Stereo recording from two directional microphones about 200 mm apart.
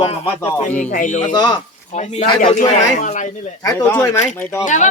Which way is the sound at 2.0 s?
35° left (ahead or behind).